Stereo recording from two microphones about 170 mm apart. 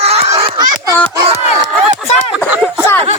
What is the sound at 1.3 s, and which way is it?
Speech, 45° right (ahead or behind).